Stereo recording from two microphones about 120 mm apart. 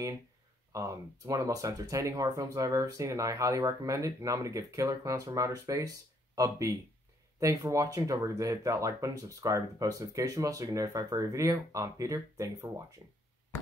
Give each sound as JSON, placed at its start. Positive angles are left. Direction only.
{"t": 0.7, "sound": "speech", "side_deg": -25}